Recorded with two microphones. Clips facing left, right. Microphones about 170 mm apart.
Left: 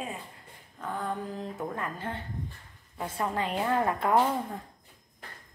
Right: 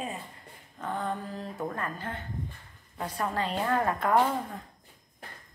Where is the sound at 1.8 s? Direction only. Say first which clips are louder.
Even; 20° left (ahead or behind).